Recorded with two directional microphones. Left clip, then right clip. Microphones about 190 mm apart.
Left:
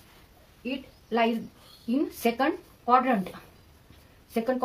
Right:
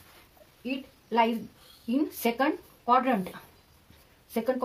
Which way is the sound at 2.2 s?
20° right (ahead or behind).